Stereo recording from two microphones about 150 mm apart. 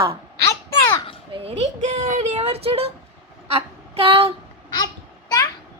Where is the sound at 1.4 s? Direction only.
45° right (ahead or behind).